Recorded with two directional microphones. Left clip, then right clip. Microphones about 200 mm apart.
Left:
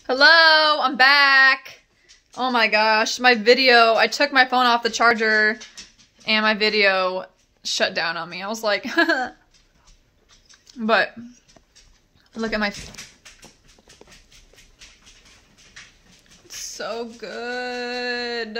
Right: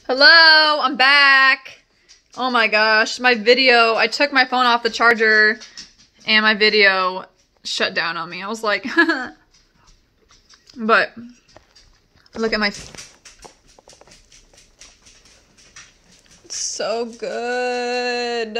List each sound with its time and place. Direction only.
0.0 s speech: centre (ahead or behind)
10.7 s speech: centre (ahead or behind)
12.4 s speech: 10° right (ahead or behind)
16.7 s speech: 25° right (ahead or behind)